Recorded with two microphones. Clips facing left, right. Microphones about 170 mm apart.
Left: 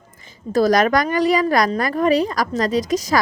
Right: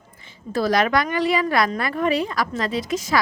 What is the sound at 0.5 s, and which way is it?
Speech, 40° left (ahead or behind).